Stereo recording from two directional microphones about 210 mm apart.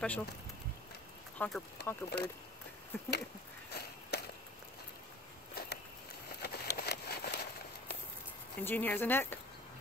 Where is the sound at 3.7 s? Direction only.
50° left (ahead or behind).